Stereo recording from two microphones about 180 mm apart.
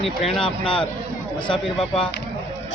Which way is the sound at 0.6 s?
30° left (ahead or behind).